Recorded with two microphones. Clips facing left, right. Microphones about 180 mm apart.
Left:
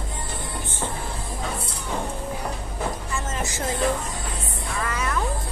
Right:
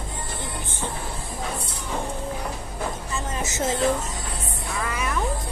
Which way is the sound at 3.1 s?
20° right (ahead or behind).